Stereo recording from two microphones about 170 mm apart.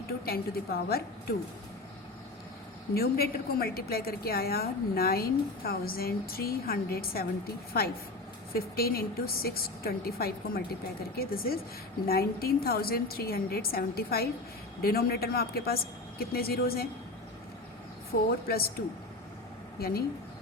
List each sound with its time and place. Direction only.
0.3 s a woman's voice: 65° left (ahead or behind)
2.9 s a woman's voice: 65° left (ahead or behind)
8.5 s a woman's voice: 60° left (ahead or behind)
18.1 s a woman's voice: 60° left (ahead or behind)
19.8 s a woman's voice: 65° left (ahead or behind)